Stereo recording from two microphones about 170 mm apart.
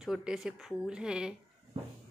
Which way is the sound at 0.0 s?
5° right (ahead or behind).